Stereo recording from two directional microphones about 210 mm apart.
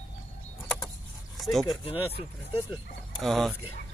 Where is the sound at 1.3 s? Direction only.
Centre (ahead or behind).